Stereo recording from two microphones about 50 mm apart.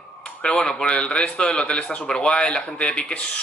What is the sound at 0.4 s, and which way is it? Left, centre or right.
Speech, centre.